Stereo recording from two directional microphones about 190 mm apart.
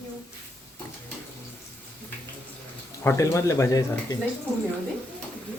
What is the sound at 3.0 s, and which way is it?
Speech, 15° left (ahead or behind).